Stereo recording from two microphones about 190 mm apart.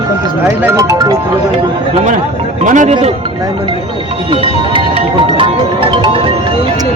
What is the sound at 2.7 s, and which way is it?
Speech, 40° right (ahead or behind).